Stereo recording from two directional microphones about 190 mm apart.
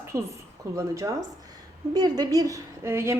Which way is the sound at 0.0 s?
15° right (ahead or behind).